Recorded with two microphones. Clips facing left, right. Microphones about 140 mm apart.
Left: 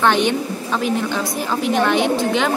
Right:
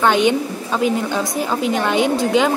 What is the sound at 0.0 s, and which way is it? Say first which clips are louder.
Speech: right 2 dB; 10° right (ahead or behind).